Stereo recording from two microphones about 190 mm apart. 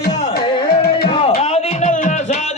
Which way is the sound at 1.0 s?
35° left (ahead or behind).